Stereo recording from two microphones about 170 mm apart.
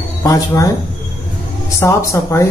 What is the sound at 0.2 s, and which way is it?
Speech, 20° left (ahead or behind).